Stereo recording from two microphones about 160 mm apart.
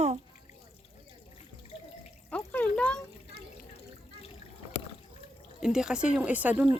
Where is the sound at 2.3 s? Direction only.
10° left (ahead or behind).